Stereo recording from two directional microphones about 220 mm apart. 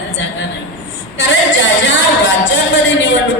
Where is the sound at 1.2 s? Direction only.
55° left (ahead or behind).